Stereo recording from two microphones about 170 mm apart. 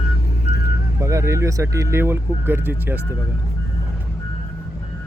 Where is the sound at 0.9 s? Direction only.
15° right (ahead or behind).